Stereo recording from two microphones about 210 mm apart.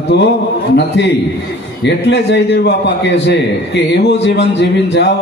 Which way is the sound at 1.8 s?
55° left (ahead or behind).